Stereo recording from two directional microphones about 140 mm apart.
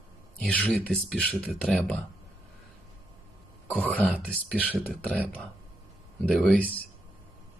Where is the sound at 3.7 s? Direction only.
10° left (ahead or behind).